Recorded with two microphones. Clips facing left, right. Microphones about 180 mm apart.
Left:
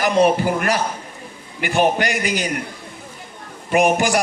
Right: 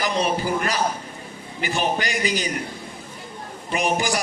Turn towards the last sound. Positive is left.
turn(degrees=55)  # may be behind; listen again after turning